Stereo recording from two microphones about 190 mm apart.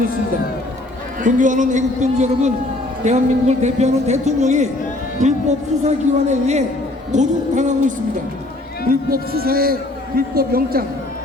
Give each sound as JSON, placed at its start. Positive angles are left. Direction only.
{"t": 1.2, "sound": "a man's voice", "side_deg": -40}